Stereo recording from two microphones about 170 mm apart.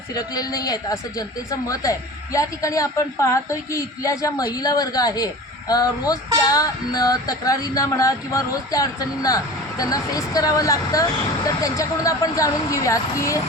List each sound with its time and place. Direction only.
0.1 s a man's voice: 20° left (ahead or behind)